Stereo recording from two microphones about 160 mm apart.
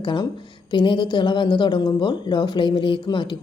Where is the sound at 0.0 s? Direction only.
30° left (ahead or behind).